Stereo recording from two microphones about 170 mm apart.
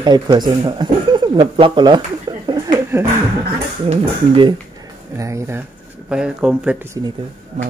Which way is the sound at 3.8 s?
30° right (ahead or behind).